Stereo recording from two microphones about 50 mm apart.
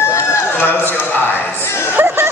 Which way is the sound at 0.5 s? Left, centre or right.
Left.